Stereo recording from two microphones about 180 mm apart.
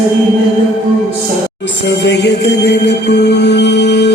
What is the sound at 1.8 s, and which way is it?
Music, 75° left (ahead or behind).